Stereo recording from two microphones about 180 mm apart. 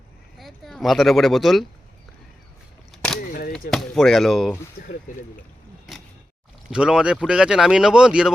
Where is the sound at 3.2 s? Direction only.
50° left (ahead or behind).